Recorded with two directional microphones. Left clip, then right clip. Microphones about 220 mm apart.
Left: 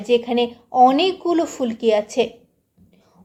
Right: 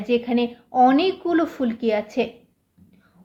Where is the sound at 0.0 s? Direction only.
25° left (ahead or behind).